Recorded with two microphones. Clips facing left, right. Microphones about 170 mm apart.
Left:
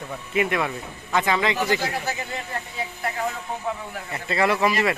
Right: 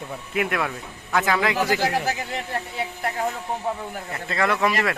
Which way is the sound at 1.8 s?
90° right.